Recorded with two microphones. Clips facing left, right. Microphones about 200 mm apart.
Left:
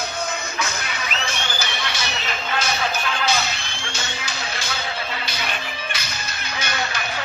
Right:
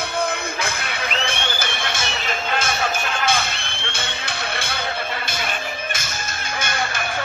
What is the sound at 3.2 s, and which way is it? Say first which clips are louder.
Music: right 1 dB; 55° right (ahead or behind).